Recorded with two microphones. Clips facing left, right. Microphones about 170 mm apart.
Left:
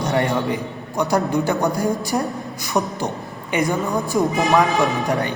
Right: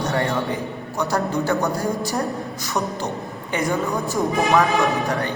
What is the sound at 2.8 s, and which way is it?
Speech, 15° left (ahead or behind).